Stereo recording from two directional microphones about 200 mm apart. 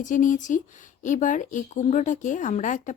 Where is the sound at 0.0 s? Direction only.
40° left (ahead or behind).